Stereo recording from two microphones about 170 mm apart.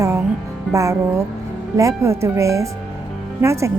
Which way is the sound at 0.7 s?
20° right (ahead or behind).